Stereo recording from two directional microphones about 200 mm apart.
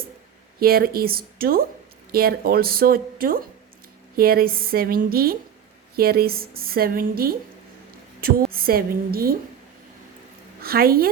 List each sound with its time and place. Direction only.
0.6 s a woman's voice: 50° right (ahead or behind)
10.6 s a woman's voice: 50° right (ahead or behind)